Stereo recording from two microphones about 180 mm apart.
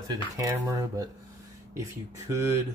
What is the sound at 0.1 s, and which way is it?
Speech, 20° right (ahead or behind).